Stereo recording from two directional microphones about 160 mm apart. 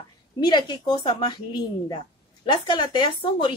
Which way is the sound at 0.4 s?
25° left (ahead or behind).